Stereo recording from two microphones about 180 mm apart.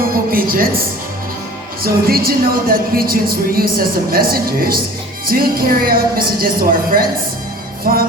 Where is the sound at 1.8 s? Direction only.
55° right (ahead or behind).